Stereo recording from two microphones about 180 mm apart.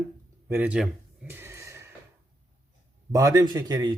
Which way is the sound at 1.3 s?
15° right (ahead or behind).